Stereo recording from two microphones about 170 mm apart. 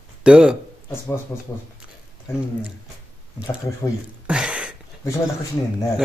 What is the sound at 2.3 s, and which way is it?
Speech, 15° left (ahead or behind).